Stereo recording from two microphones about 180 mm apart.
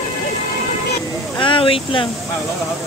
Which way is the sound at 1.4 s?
30° left (ahead or behind).